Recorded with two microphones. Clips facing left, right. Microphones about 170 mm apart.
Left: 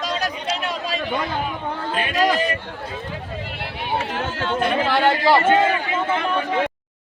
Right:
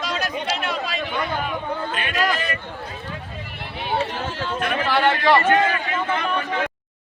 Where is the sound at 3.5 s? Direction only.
85° left.